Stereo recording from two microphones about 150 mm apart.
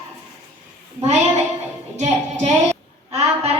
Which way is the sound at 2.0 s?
50° right (ahead or behind).